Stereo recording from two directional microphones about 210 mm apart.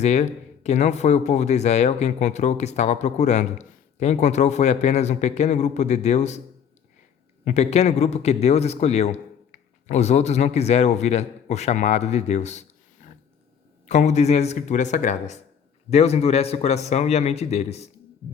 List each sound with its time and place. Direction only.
0.0 s speech: 35° left (ahead or behind)
7.4 s speech: 30° left (ahead or behind)
13.8 s speech: 35° left (ahead or behind)